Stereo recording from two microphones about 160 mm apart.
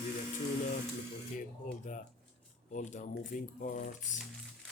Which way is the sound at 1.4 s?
50° left (ahead or behind).